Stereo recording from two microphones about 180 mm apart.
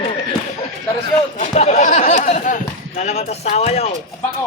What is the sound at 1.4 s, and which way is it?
Speech, 40° left (ahead or behind).